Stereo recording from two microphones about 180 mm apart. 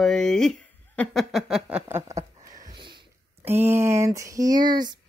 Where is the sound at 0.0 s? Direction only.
Centre (ahead or behind).